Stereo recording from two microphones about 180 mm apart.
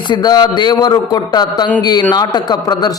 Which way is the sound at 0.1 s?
25° left (ahead or behind).